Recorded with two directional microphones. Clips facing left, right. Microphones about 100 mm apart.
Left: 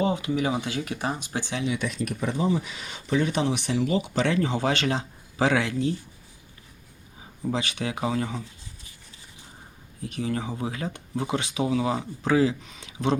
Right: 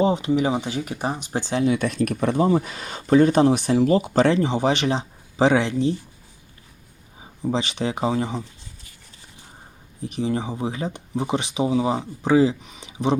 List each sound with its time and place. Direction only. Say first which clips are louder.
0.0 s speech: right 5 dB; 25° right (ahead or behind); by 1.9 s 45° right (ahead or behind)
1.9 s speech: right 7 dB; 65° right (ahead or behind); by 4.4 s 35° right (ahead or behind)
4.4 s speech: right 4 dB; 20° right (ahead or behind)
7.4 s speech: right 4 dB; 25° right (ahead or behind)
10.0 s speech: right 4 dB; 20° right (ahead or behind)